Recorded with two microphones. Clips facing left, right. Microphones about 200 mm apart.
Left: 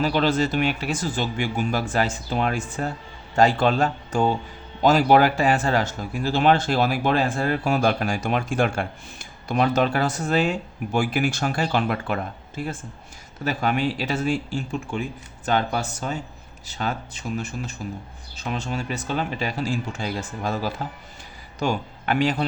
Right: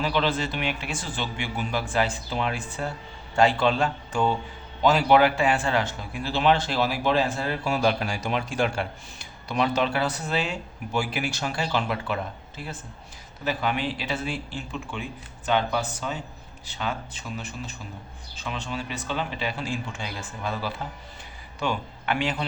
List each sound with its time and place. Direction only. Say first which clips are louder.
0.0 s speech: left 5 dB; 45° left (ahead or behind)
13.4 s a man's voice: left 4 dB; 45° left (ahead or behind)